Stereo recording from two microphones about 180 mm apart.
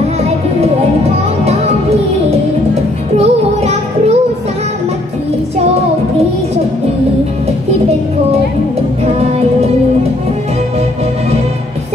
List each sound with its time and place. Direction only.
1.4 s music: 35° right (ahead or behind)
3.2 s music: 35° right (ahead or behind)
9.0 s music: 35° right (ahead or behind)